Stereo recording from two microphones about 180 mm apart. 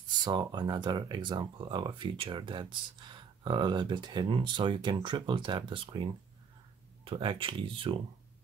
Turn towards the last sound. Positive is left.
turn(degrees=-30)  # may be behind; listen again after turning